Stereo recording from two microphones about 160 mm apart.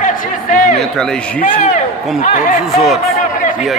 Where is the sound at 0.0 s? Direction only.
50° left (ahead or behind).